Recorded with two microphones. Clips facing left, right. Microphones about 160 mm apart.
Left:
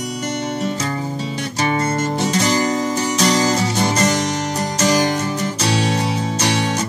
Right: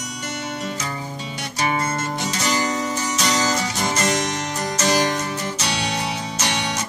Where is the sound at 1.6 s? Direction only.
35° left (ahead or behind).